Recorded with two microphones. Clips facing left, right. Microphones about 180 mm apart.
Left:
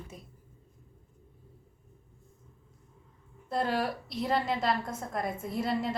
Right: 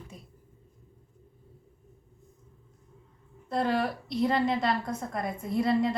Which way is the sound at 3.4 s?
5° left (ahead or behind).